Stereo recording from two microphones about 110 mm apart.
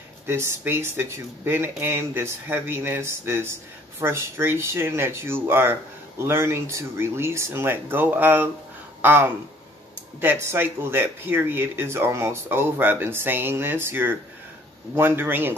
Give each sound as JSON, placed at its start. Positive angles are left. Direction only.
{"t": 0.3, "sound": "speech", "side_deg": -25}